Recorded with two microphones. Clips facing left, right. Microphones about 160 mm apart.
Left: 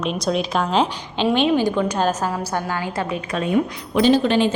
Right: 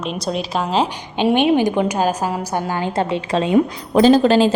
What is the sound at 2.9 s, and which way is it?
Speech, 30° right (ahead or behind).